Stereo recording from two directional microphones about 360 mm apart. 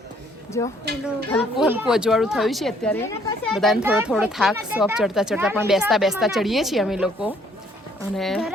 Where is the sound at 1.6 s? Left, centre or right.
Centre.